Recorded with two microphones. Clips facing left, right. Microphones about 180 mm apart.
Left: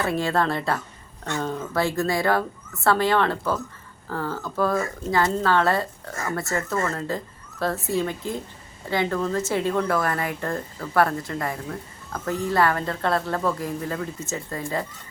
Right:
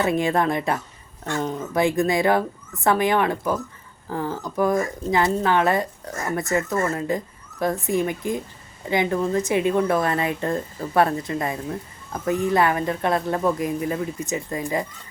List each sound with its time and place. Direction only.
0.0 s speech: 20° right (ahead or behind)